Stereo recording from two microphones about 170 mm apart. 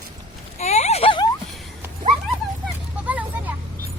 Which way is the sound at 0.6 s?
40° left (ahead or behind).